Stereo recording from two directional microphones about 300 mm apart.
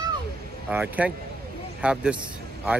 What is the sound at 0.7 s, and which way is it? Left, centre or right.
Speech, centre.